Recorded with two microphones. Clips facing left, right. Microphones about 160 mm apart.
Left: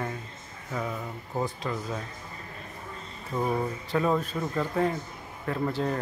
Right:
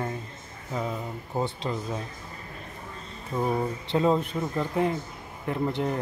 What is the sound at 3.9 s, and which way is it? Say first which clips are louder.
Speech: right 3 dB; 20° right (ahead or behind).